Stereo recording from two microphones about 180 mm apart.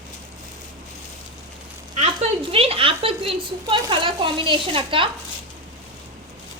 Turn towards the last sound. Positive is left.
turn(degrees=-30)  # may be behind; listen again after turning